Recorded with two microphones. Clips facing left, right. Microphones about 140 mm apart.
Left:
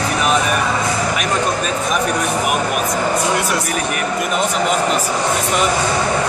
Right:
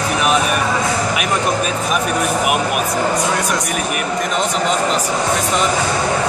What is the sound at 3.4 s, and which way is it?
Speech, 5° left (ahead or behind).